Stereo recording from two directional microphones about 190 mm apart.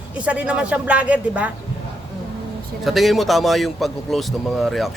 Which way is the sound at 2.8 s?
Centre (ahead or behind).